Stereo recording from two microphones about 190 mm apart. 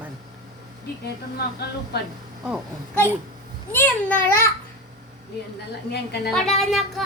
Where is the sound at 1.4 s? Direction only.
55° left (ahead or behind).